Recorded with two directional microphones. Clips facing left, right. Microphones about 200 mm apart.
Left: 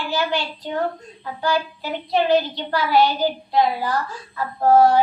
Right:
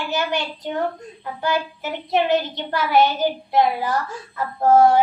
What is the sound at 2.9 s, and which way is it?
Child singing, 20° right (ahead or behind).